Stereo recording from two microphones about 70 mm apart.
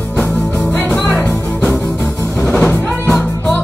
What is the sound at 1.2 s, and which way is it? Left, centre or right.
Music, centre.